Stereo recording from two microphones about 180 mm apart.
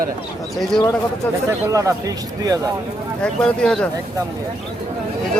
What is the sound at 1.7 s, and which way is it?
Speech, 20° right (ahead or behind).